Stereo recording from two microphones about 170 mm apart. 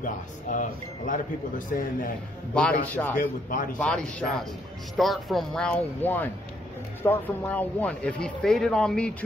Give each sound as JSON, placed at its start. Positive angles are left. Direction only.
{"t": 0.0, "sound": "a man's voice", "side_deg": 50}
{"t": 2.5, "sound": "speech", "side_deg": 10}
{"t": 3.2, "sound": "a man's voice", "side_deg": 50}
{"t": 3.7, "sound": "speech", "side_deg": 5}